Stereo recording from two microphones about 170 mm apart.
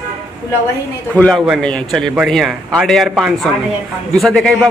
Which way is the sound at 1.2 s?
5° left (ahead or behind).